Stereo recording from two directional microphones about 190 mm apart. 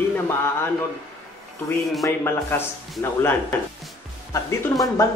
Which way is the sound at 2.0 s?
10° left (ahead or behind).